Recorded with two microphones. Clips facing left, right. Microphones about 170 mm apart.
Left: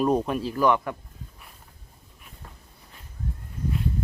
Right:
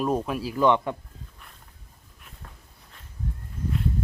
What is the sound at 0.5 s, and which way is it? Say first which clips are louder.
Speech: right 2 dB; 25° right (ahead or behind).